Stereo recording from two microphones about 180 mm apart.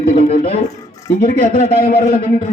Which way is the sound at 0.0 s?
45° left (ahead or behind).